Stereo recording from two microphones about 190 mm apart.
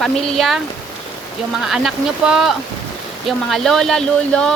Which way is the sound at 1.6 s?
Centre (ahead or behind).